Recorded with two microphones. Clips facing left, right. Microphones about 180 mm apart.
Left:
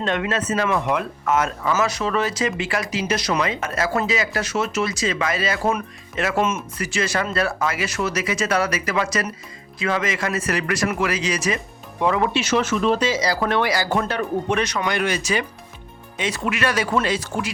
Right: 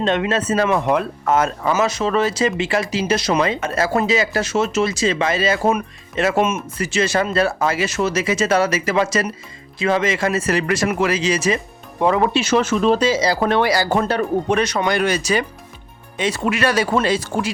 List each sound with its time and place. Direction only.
0.0 s speech: 25° right (ahead or behind)
1.7 s speech: 25° right (ahead or behind)